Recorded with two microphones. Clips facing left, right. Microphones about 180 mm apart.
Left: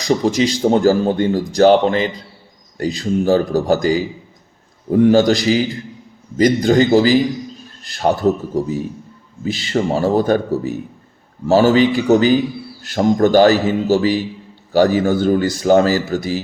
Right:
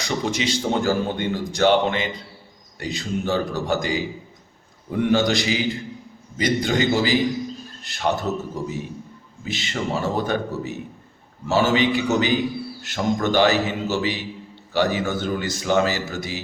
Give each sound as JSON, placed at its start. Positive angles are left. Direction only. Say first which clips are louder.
{"t": 0.3, "sound": "a man's voice", "louder": "left 7 dB", "side_deg": 40}